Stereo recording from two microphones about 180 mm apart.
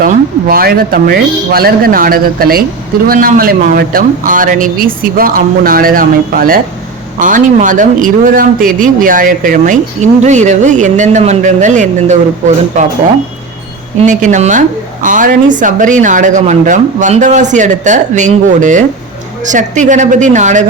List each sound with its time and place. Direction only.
0.0 s speech: 55° right (ahead or behind)
14.0 s speech: 45° right (ahead or behind)